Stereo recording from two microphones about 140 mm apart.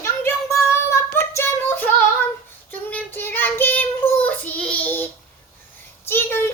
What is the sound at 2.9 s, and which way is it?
Child singing, 15° left (ahead or behind).